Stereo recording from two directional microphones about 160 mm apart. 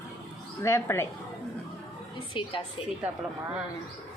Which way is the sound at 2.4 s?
30° left (ahead or behind).